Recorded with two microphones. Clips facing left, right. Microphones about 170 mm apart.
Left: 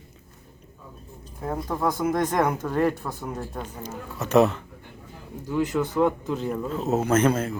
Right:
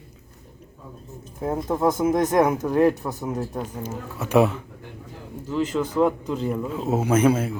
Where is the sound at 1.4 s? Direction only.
20° right (ahead or behind).